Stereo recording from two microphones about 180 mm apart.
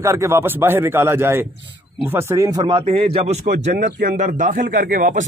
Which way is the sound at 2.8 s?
35° right (ahead or behind).